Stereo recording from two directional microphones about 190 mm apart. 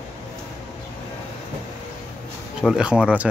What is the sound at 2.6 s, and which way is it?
Speech, 5° right (ahead or behind).